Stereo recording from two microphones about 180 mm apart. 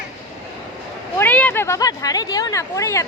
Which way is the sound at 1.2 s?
10° left (ahead or behind).